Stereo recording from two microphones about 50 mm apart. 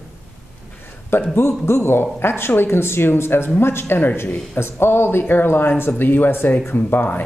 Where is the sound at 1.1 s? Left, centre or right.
Left.